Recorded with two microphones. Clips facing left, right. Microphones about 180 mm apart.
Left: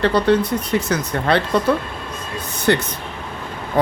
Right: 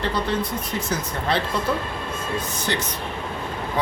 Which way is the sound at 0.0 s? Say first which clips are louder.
Left 8 dB; 70° left (ahead or behind).